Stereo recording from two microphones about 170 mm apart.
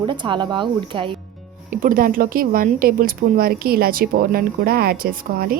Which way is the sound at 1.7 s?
55° right (ahead or behind).